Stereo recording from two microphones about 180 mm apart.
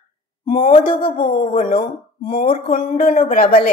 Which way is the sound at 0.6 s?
30° left (ahead or behind).